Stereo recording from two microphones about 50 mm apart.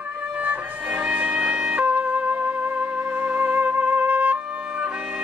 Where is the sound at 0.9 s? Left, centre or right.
Right.